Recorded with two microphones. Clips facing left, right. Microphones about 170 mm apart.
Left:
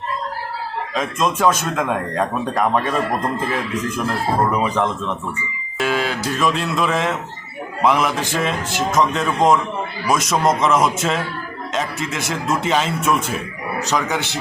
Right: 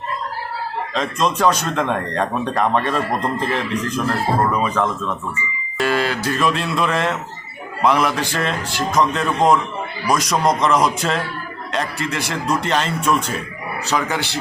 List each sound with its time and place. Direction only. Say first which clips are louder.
0.9 s a man's voice: even; 5° left (ahead or behind)
4.5 s speech: even; 20° left (ahead or behind)
5.7 s a man's voice: right 1 dB; centre (ahead or behind)